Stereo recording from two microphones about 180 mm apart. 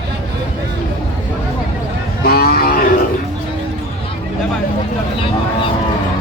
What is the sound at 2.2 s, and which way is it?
Speech, 55° left (ahead or behind).